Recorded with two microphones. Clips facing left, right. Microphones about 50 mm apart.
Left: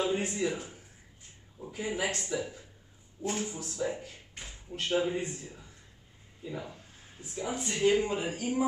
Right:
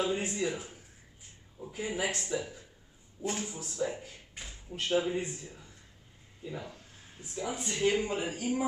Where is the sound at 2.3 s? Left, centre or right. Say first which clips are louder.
Left 1 dB; centre.